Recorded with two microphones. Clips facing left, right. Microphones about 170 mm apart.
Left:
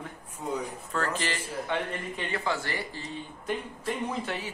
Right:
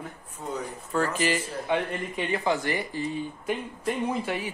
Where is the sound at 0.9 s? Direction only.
10° right (ahead or behind).